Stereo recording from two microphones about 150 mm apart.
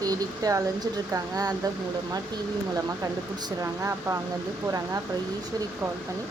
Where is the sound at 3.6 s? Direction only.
20° right (ahead or behind).